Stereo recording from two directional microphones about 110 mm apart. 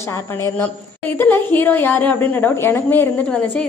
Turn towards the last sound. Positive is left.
turn(degrees=10)  # may be behind; listen again after turning